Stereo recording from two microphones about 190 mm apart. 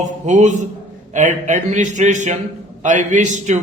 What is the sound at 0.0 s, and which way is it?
A man's voice, 40° right (ahead or behind).